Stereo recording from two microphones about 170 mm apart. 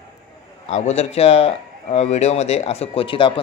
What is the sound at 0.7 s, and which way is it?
A man's voice, 40° left (ahead or behind).